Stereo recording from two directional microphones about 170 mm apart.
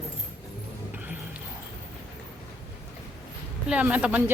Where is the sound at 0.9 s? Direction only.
10° right (ahead or behind).